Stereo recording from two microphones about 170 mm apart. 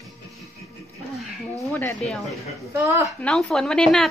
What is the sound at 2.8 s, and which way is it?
Speech, 15° right (ahead or behind).